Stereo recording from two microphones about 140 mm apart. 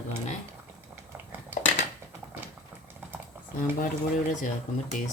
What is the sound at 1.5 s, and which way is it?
Dishes, 60° left (ahead or behind).